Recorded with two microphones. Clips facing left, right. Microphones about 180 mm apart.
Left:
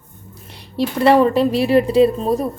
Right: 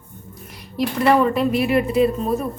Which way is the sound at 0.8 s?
30° left (ahead or behind).